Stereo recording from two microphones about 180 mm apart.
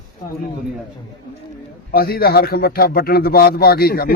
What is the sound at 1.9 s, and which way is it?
A man's voice, 55° left (ahead or behind).